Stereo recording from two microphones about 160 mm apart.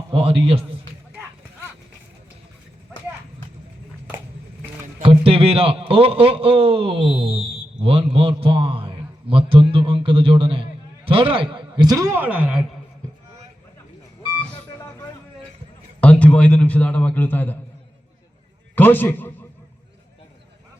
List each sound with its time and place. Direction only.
0.1 s a man's voice: 30° right (ahead or behind)
5.0 s a man's voice: 35° right (ahead or behind); by 12.6 s 5° right (ahead or behind)
16.0 s a man's voice: 10° left (ahead or behind)
18.7 s a man's voice: 10° left (ahead or behind)